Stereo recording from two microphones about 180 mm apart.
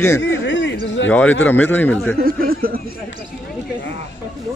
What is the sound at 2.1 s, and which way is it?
Speech, 55° right (ahead or behind).